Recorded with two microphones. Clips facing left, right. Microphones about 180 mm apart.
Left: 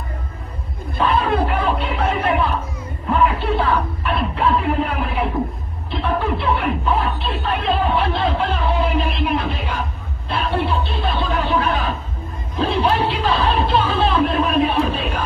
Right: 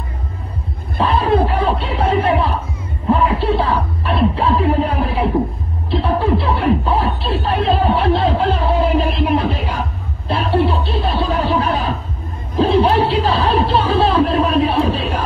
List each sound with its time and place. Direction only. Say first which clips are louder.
0.9 s music: right 3 dB; 35° right (ahead or behind)